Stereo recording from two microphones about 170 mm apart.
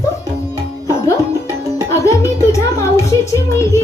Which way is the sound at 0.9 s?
15° left (ahead or behind).